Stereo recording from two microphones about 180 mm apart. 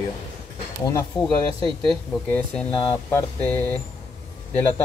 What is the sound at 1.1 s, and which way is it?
Speech, 25° left (ahead or behind).